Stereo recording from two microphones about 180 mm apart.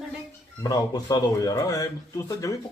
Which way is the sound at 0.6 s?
20° left (ahead or behind).